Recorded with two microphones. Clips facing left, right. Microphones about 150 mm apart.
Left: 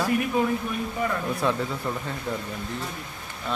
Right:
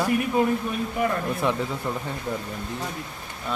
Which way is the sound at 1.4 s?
15° right (ahead or behind).